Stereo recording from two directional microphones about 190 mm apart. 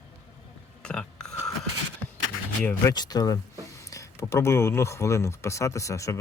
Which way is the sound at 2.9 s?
20° left (ahead or behind).